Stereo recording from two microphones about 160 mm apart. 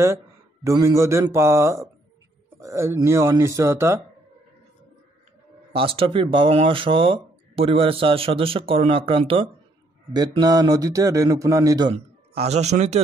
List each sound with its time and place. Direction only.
0.7 s a man's voice: 20° right (ahead or behind)
5.7 s a man's voice: 35° right (ahead or behind)
11.9 s speech: 40° right (ahead or behind)